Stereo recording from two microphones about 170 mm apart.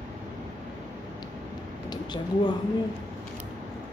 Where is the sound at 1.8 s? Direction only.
25° left (ahead or behind).